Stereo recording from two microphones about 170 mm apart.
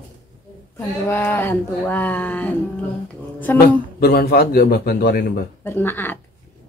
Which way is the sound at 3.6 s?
65° left (ahead or behind).